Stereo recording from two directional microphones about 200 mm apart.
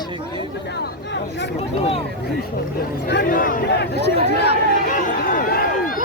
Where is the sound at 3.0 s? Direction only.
55° left (ahead or behind).